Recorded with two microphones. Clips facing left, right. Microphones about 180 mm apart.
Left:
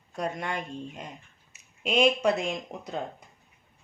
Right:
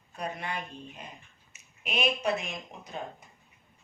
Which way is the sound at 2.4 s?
75° left (ahead or behind).